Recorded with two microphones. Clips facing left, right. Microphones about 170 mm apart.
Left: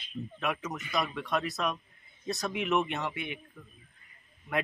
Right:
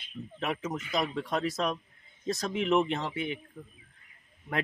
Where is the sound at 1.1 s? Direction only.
30° right (ahead or behind).